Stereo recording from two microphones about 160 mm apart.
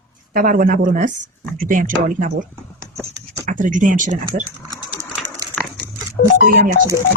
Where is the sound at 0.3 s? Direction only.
55° right (ahead or behind).